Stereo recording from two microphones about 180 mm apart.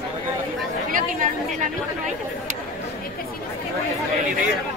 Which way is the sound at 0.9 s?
50° right (ahead or behind).